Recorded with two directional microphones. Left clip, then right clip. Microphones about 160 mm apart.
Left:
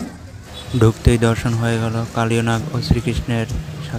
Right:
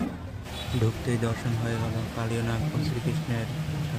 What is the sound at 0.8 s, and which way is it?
Speech, 60° left (ahead or behind).